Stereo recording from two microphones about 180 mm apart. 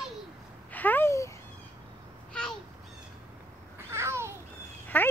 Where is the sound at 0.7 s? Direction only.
10° left (ahead or behind).